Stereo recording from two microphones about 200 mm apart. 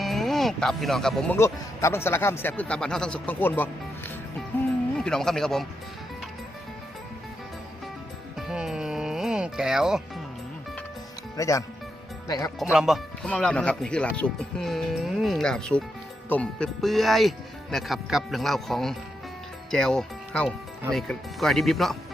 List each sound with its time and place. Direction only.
0.0 s music: centre (ahead or behind)
1.4 s speech: 15° left (ahead or behind)
4.9 s speech: 5° left (ahead or behind)
8.4 s music: centre (ahead or behind)
11.3 s speech: 15° left (ahead or behind)
12.5 s speech: 5° right (ahead or behind)